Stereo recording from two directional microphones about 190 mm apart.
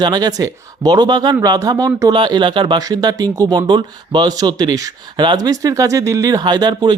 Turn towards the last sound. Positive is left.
turn(degrees=-20)  # may be behind; listen again after turning